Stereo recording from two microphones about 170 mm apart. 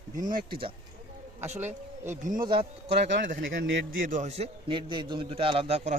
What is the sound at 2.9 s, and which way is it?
Speech, 85° right.